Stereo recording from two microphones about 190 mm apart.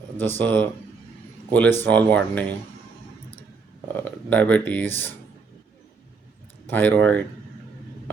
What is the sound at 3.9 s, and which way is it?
Speech, 10° left (ahead or behind).